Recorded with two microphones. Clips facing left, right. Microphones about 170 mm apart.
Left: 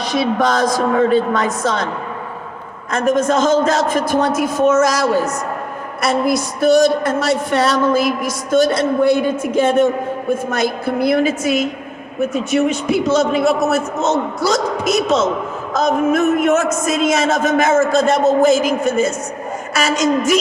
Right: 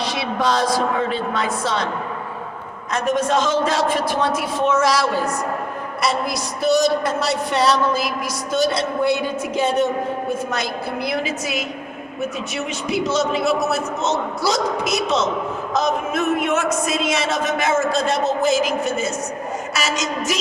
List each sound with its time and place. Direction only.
0.0 s a woman's voice: 45° left (ahead or behind)
2.9 s a woman's voice: 50° left (ahead or behind)